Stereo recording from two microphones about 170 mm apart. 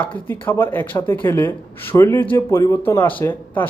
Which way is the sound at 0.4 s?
15° left (ahead or behind).